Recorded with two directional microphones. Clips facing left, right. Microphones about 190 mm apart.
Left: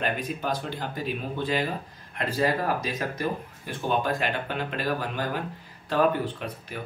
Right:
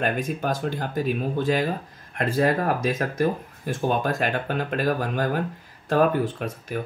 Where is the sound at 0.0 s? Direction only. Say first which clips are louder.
Right 4 dB; 45° right (ahead or behind).